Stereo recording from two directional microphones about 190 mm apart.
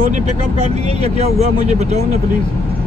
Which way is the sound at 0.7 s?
35° right (ahead or behind).